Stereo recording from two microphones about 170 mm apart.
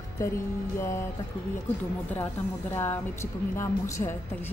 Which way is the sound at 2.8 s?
15° left (ahead or behind).